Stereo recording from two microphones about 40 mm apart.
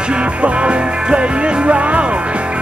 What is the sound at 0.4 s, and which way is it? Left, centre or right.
Music, right.